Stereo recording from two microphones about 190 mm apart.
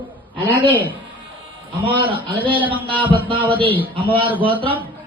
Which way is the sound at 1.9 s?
25° right (ahead or behind).